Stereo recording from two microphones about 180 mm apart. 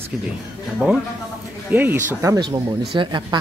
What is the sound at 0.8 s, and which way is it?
A woman's voice, 5° right (ahead or behind).